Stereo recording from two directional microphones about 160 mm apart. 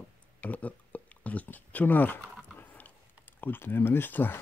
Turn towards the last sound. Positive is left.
turn(degrees=10)  # may be behind; listen again after turning